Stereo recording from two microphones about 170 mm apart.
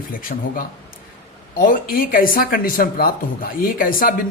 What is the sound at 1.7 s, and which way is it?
Speech, 55° left (ahead or behind).